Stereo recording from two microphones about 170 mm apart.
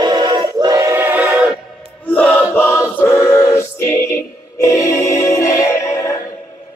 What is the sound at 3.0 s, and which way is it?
A capella, 20° left (ahead or behind).